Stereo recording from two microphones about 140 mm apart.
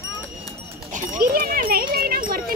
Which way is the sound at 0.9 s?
75° right (ahead or behind).